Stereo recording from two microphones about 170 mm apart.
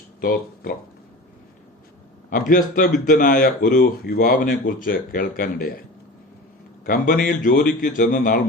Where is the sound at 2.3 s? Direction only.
50° left (ahead or behind).